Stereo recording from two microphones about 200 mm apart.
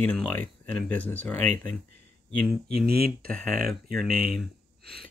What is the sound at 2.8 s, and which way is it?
Speech, 50° right (ahead or behind).